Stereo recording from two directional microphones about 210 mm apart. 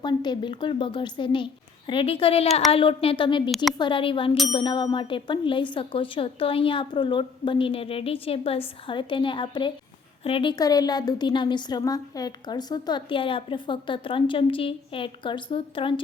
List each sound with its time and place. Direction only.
0.0 s a woman's voice: 20° left (ahead or behind)
3.5 s a woman's voice: centre (ahead or behind)
3.8 s a woman's voice: 25° left (ahead or behind)